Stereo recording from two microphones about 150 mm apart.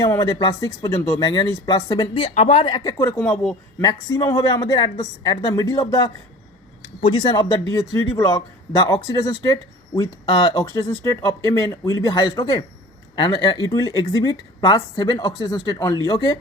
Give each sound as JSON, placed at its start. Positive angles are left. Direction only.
{"t": 0.0, "sound": "speech", "side_deg": 25}
{"t": 2.2, "sound": "speech", "side_deg": 40}
{"t": 3.0, "sound": "speech", "side_deg": 20}